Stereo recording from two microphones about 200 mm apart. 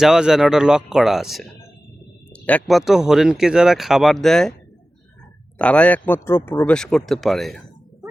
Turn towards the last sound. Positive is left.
turn(degrees=0)  # may be behind; listen again after turning